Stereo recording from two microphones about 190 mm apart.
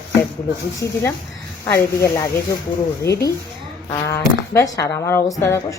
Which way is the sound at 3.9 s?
15° left (ahead or behind).